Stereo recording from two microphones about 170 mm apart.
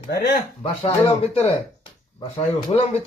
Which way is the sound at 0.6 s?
35° left (ahead or behind).